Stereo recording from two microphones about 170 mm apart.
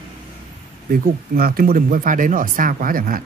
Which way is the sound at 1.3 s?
60° right (ahead or behind).